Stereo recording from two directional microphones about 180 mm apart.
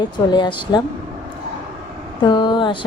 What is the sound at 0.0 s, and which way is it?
Speech, 25° left (ahead or behind).